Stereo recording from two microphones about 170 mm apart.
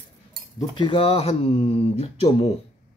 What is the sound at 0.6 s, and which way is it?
Speech, 30° left (ahead or behind).